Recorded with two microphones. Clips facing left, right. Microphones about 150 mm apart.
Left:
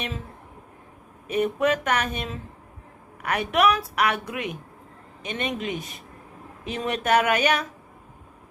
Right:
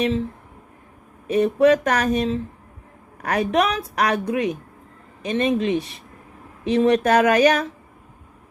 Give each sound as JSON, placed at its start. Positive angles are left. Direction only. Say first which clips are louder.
{"t": 1.3, "sound": "speech", "louder": "right 7 dB", "side_deg": -35}